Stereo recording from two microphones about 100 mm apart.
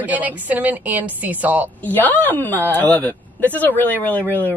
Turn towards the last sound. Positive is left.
turn(degrees=20)  # may be behind; listen again after turning